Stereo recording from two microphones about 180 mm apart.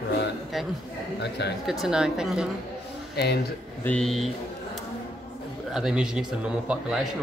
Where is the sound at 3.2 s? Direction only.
65° left (ahead or behind).